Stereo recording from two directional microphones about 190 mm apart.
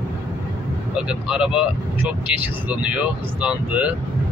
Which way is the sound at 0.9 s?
5° right (ahead or behind).